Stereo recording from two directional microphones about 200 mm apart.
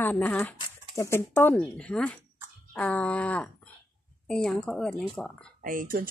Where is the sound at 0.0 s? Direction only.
10° left (ahead or behind).